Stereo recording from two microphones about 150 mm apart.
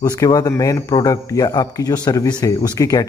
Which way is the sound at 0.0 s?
25° left (ahead or behind).